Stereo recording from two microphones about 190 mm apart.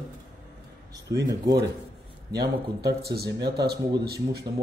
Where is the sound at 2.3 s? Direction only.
55° right (ahead or behind).